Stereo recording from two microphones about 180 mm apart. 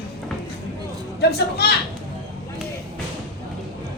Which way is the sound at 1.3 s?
65° left (ahead or behind).